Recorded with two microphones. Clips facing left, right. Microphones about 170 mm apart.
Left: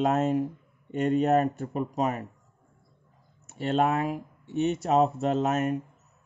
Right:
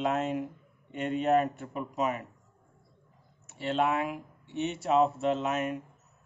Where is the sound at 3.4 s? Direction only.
45° left (ahead or behind).